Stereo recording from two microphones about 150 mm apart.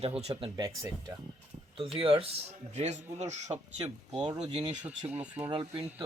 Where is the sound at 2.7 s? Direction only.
50° right (ahead or behind).